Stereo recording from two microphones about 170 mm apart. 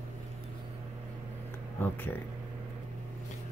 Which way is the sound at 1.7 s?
10° left (ahead or behind).